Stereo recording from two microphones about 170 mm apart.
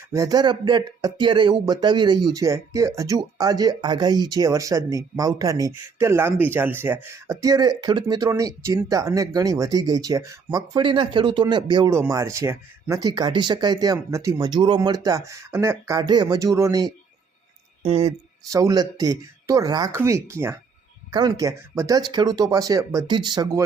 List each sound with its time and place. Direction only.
0.1 s speech: 20° right (ahead or behind)
17.8 s speech: 40° right (ahead or behind)
18.5 s speech: 20° right (ahead or behind)